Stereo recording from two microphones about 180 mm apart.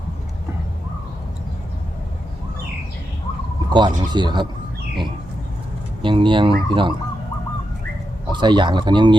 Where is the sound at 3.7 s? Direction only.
25° right (ahead or behind).